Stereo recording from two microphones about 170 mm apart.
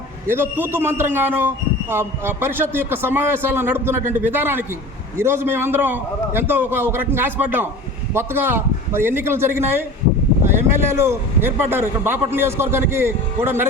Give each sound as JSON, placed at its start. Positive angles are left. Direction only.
{"t": 0.3, "sound": "a man's voice", "side_deg": -15}
{"t": 10.8, "sound": "a man's voice", "side_deg": -15}